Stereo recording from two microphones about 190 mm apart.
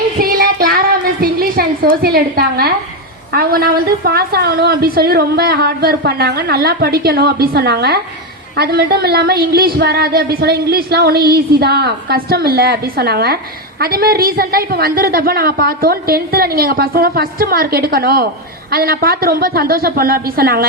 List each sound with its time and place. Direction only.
0.2 s child singing: 50° right (ahead or behind)
3.3 s a woman's voice: 55° right (ahead or behind)